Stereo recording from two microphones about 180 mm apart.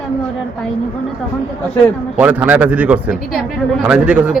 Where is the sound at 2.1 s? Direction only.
10° right (ahead or behind).